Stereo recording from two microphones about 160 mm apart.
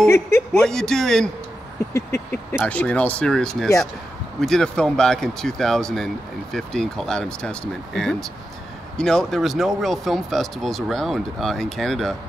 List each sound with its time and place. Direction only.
0.1 s speech: 10° left (ahead or behind)
2.0 s speech: 15° left (ahead or behind)